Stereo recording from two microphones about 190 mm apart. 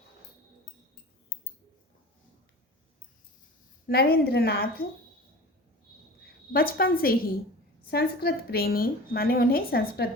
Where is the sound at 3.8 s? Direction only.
55° left (ahead or behind).